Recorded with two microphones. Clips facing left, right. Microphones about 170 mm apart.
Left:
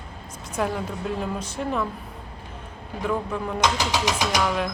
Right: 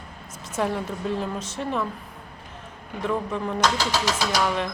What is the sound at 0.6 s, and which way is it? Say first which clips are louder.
A woman's voice: even; centre (ahead or behind).